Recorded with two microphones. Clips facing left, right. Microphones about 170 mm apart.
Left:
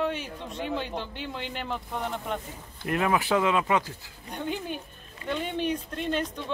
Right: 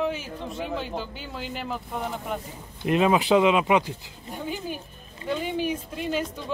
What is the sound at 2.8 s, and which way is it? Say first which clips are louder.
Speech: right 5 dB; 20° right (ahead or behind).